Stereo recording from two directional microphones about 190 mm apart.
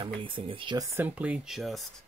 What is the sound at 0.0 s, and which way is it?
Speech, 25° right (ahead or behind).